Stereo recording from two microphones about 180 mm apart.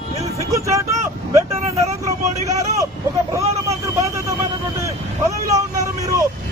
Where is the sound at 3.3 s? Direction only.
15° right (ahead or behind).